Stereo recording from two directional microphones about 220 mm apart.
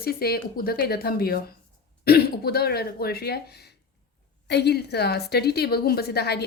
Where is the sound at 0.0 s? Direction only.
45° left (ahead or behind).